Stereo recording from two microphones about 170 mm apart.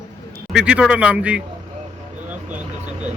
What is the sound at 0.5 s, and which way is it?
Speech, 5° right (ahead or behind).